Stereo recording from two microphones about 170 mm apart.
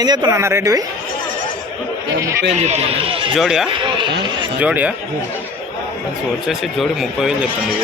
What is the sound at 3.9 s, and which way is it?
Speech, 30° right (ahead or behind).